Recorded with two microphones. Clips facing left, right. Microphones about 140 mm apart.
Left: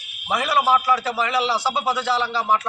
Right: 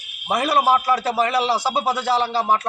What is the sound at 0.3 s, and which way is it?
A man's voice, 45° right (ahead or behind).